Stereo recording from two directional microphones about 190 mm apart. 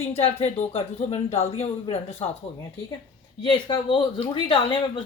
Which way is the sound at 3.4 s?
25° left (ahead or behind).